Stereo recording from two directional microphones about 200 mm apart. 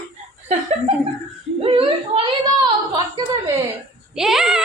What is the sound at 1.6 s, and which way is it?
Speech, 25° right (ahead or behind).